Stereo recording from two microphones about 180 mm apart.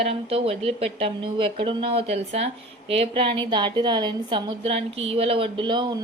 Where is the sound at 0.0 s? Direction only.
35° right (ahead or behind).